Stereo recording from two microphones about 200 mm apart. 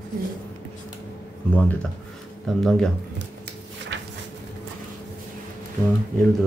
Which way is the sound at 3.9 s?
65° right (ahead or behind).